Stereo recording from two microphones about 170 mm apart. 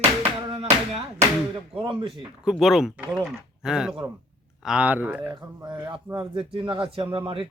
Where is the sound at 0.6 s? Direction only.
40° right (ahead or behind).